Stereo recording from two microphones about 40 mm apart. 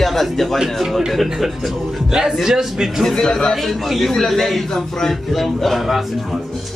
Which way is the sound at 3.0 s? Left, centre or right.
Centre.